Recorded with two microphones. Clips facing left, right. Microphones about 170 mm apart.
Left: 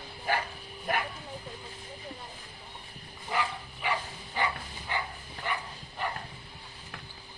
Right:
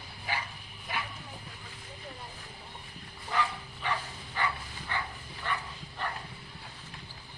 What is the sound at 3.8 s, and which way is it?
Bow-wow, 15° left (ahead or behind).